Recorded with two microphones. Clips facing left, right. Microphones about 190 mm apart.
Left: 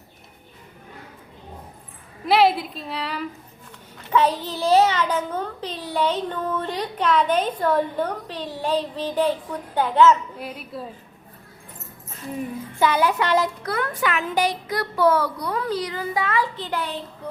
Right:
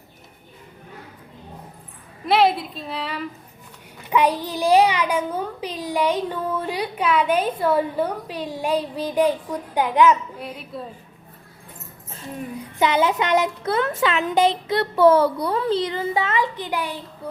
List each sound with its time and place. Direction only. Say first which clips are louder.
2.2 s a woman's voice: even; centre (ahead or behind)
3.9 s a child's voice: right 1 dB; 15° right (ahead or behind)
10.4 s speech: even; centre (ahead or behind)
12.8 s speech: right 1 dB; 20° right (ahead or behind)